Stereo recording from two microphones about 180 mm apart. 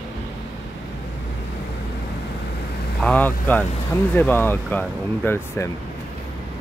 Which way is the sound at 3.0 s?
10° left (ahead or behind).